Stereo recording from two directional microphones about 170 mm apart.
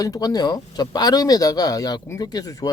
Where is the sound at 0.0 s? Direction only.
20° left (ahead or behind).